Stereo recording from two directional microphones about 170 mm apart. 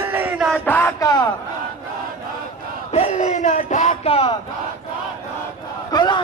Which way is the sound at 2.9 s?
45° left (ahead or behind).